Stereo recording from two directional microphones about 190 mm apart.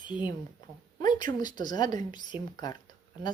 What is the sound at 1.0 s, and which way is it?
Speech, 20° left (ahead or behind).